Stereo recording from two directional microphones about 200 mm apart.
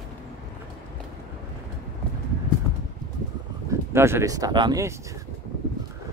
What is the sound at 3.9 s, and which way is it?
Speech, 15° right (ahead or behind).